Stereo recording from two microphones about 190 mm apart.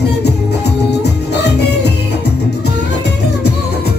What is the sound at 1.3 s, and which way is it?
Music, 60° left (ahead or behind).